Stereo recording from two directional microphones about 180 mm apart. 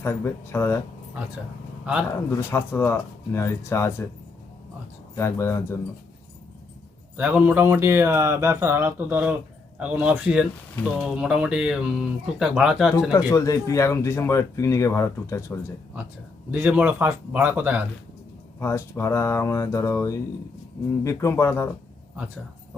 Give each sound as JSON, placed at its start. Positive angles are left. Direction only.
{"t": 0.0, "sound": "speech", "side_deg": 15}
{"t": 2.0, "sound": "speech", "side_deg": 15}
{"t": 5.1, "sound": "speech", "side_deg": 15}
{"t": 7.2, "sound": "speech", "side_deg": -10}
{"t": 13.1, "sound": "speech", "side_deg": 15}
{"t": 16.5, "sound": "speech", "side_deg": -10}
{"t": 18.6, "sound": "speech", "side_deg": 15}